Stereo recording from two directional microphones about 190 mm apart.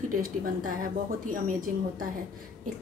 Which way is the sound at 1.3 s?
45° right (ahead or behind).